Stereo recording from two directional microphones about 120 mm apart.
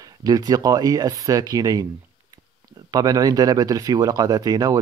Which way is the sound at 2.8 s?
30° right (ahead or behind).